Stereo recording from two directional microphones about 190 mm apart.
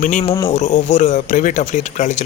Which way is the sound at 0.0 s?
40° left (ahead or behind).